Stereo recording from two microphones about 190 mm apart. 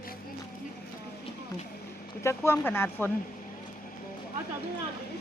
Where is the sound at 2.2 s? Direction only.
15° left (ahead or behind).